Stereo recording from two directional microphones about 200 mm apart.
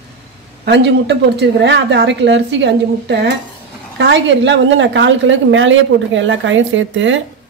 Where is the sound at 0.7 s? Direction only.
55° right (ahead or behind).